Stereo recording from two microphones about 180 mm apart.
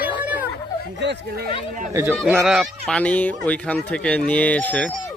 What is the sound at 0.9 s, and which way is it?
Speech, 75° right (ahead or behind).